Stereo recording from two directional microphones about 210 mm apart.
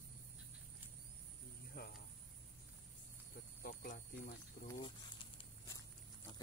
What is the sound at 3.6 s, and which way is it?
Speech, 45° left (ahead or behind).